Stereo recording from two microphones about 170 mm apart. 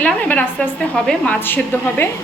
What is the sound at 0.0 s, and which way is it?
A woman's voice, 10° left (ahead or behind).